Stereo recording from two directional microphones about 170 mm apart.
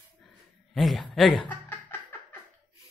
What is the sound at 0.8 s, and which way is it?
Speech, centre (ahead or behind).